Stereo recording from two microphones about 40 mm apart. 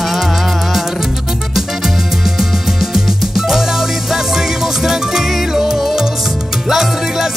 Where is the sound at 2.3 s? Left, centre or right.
Centre.